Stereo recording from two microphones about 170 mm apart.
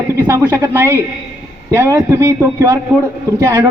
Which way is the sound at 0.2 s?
15° right (ahead or behind).